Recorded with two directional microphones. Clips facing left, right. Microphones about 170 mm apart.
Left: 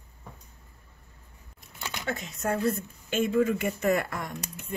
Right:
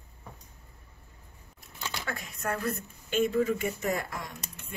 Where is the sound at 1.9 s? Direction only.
20° left (ahead or behind).